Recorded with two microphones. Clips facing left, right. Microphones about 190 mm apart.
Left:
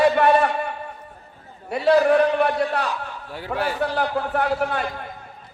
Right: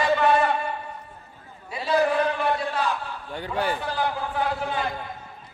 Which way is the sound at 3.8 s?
65° left (ahead or behind).